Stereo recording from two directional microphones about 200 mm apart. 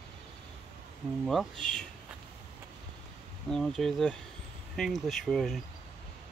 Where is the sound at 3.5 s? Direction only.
5° left (ahead or behind).